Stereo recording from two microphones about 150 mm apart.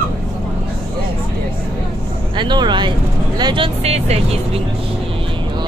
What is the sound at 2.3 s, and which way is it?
Speech, 30° right (ahead or behind).